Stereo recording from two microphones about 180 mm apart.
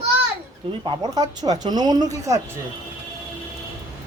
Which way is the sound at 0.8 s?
25° right (ahead or behind).